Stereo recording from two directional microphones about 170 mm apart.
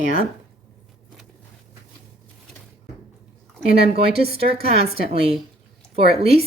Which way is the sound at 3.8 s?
35° right (ahead or behind).